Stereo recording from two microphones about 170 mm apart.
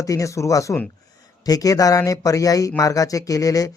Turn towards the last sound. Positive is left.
turn(degrees=20)  # may be behind; listen again after turning